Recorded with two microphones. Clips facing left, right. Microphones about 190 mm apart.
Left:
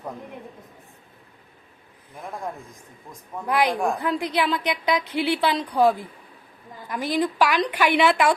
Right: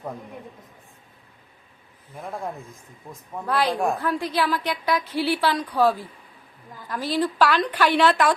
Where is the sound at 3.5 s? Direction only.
15° left (ahead or behind).